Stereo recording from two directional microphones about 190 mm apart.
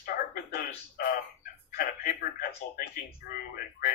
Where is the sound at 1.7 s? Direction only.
50° left (ahead or behind).